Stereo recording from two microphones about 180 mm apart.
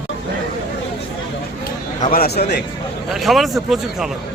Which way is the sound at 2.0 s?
55° left (ahead or behind).